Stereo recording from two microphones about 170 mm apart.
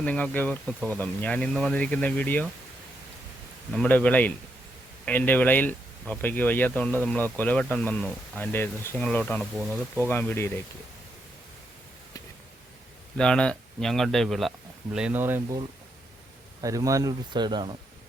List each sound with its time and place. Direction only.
0.0 s speech: 5° left (ahead or behind)
3.8 s speech: 10° left (ahead or behind)
10.1 s speech: 10° left (ahead or behind)
13.1 s speech: 5° left (ahead or behind); by 15.5 s 15° right (ahead or behind)
16.6 s speech: 20° right (ahead or behind)